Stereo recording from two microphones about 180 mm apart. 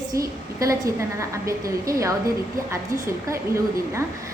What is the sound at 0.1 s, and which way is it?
A woman's voice, 20° right (ahead or behind).